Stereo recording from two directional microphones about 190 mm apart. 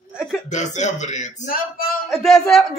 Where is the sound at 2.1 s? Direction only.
Centre (ahead or behind).